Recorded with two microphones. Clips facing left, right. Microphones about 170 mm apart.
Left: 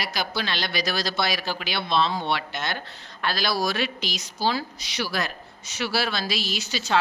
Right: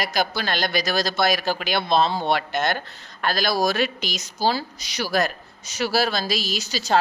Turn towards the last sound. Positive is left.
turn(degrees=-40)  # may be behind; listen again after turning